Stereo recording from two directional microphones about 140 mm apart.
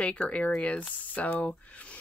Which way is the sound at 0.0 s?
10° left (ahead or behind).